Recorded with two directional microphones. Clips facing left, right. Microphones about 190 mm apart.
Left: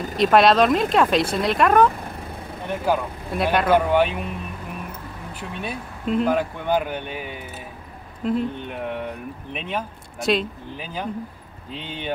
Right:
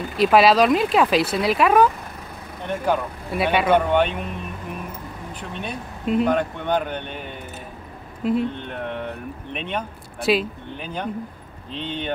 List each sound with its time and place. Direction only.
0.2 s speech: 5° right (ahead or behind)
5.4 s speech: 5° left (ahead or behind)
8.2 s speech: 5° right (ahead or behind)